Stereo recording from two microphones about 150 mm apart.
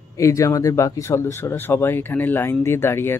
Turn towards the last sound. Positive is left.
turn(degrees=15)  # may be behind; listen again after turning